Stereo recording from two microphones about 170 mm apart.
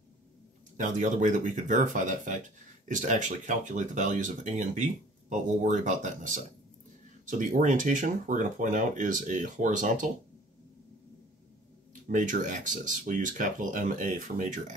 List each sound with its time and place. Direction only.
0.7 s speech: 50° right (ahead or behind)
11.9 s speech: 50° right (ahead or behind)